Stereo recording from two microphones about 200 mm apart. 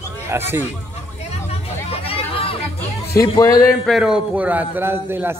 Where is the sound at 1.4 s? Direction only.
30° left (ahead or behind).